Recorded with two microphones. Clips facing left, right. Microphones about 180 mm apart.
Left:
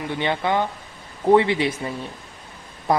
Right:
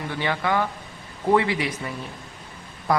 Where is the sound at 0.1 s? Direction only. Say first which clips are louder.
Left 2 dB; 25° left (ahead or behind).